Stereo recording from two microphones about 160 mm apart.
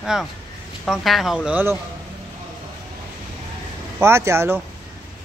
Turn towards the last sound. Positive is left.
turn(degrees=-15)  # may be behind; listen again after turning